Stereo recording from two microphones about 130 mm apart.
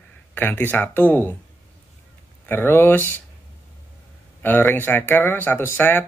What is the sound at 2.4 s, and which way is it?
Speech, 15° left (ahead or behind).